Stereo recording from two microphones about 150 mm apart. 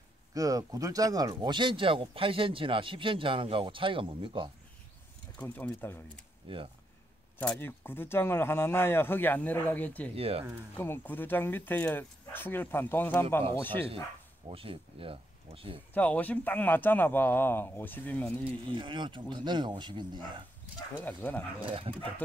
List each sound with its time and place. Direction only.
0.3 s speech: 25° right (ahead or behind)
5.4 s speech: 10° left (ahead or behind)
6.4 s speech: 35° right (ahead or behind)
7.3 s speech: 10° left (ahead or behind)
10.1 s speech: 40° right (ahead or behind)
10.8 s speech: 15° left (ahead or behind)
14.5 s speech: 35° right (ahead or behind)
15.9 s speech: 10° left (ahead or behind)
18.7 s speech: 30° right (ahead or behind)
21.0 s speech: 10° left (ahead or behind)
21.5 s speech: 35° right (ahead or behind)